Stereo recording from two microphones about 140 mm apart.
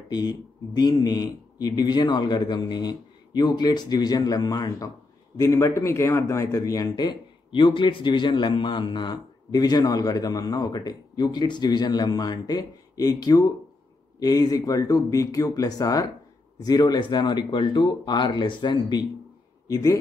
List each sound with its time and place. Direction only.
0.1 s a man's voice: 30° left (ahead or behind)